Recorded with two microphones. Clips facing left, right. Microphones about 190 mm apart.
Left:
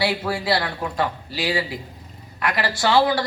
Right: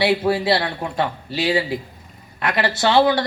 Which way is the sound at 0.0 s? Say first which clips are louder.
Right 5 dB; 25° right (ahead or behind).